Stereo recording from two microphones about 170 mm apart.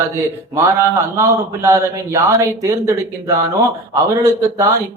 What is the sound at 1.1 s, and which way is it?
Speech, 15° right (ahead or behind).